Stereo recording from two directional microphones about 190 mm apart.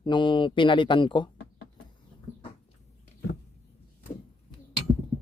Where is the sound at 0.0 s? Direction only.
25° left (ahead or behind).